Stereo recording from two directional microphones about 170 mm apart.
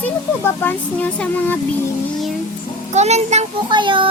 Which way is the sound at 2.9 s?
40° right (ahead or behind).